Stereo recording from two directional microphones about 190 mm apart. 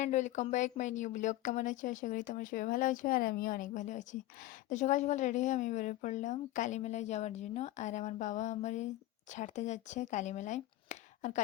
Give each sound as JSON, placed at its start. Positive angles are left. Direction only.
{"t": 0.0, "sound": "a woman's voice", "side_deg": 40}